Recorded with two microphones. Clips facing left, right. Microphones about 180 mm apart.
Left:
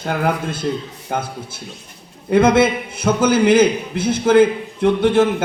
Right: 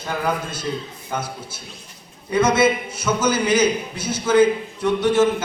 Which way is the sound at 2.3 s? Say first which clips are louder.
Left 4 dB; 60° left (ahead or behind).